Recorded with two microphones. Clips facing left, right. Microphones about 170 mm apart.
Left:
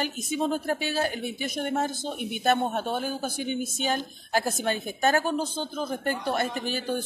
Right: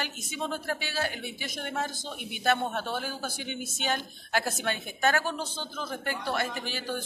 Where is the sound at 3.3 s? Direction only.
40° left (ahead or behind).